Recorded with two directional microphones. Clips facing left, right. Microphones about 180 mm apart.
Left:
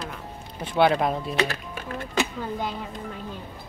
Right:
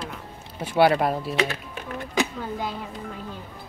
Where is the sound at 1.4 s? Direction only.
20° right (ahead or behind).